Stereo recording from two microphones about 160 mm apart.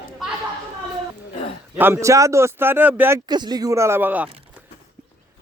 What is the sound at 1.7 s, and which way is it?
A man's voice, 15° right (ahead or behind).